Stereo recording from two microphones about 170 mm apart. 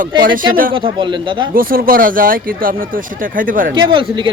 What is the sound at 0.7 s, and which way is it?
Speech, 30° right (ahead or behind).